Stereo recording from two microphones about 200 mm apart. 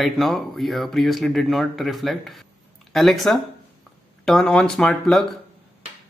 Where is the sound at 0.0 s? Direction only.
Centre (ahead or behind).